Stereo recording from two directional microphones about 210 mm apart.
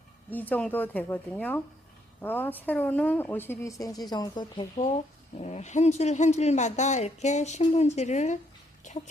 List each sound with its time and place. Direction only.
0.3 s speech: 10° left (ahead or behind)
5.4 s speech: 30° left (ahead or behind)